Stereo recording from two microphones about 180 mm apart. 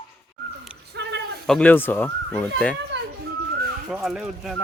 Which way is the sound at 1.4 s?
5° left (ahead or behind).